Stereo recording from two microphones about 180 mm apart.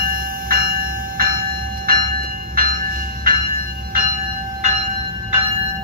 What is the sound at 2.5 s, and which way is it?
Train, 50° right (ahead or behind).